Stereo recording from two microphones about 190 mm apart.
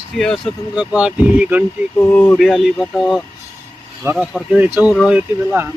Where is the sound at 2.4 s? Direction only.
Centre (ahead or behind).